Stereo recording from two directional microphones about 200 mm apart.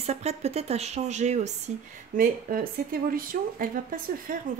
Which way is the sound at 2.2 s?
45° right (ahead or behind).